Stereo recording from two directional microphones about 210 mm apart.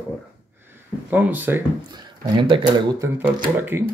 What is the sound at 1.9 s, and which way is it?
Speech, 20° right (ahead or behind).